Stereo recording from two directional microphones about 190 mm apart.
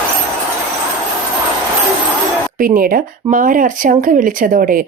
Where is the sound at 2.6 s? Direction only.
45° right (ahead or behind).